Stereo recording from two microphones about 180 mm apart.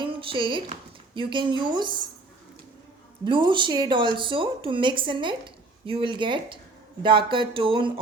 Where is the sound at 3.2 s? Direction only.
25° right (ahead or behind).